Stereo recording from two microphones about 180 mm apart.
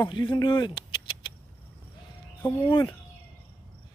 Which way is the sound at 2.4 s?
20° left (ahead or behind).